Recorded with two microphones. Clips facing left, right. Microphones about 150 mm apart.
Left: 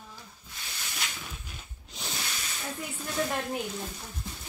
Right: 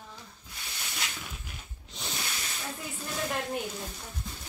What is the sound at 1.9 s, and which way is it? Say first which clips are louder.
Snake: even; centre (ahead or behind).